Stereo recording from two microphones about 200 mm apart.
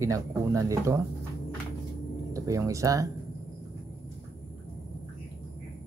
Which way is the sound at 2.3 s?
15° right (ahead or behind).